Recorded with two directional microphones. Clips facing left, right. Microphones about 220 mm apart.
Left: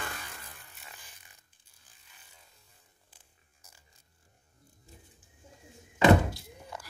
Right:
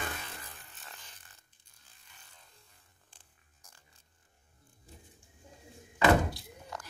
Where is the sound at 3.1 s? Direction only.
5° left (ahead or behind).